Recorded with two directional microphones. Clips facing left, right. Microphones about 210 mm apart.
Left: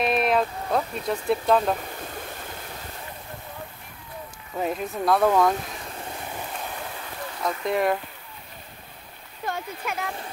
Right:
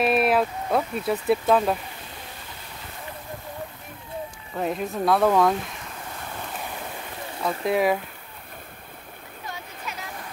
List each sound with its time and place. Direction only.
0.0 s speech: 5° right (ahead or behind)
4.6 s speech: centre (ahead or behind)
7.4 s speech: centre (ahead or behind)
9.5 s a sound: 55° left (ahead or behind)